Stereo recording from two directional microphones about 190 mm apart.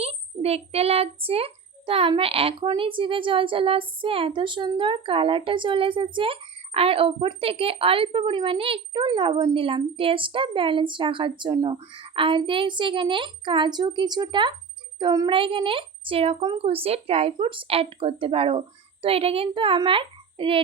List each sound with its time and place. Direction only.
0.0 s a child's voice: 30° right (ahead or behind)